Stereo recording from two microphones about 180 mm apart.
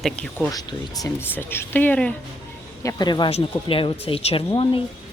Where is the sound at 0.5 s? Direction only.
20° left (ahead or behind).